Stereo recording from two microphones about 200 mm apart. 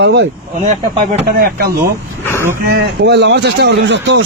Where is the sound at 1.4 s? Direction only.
50° right (ahead or behind).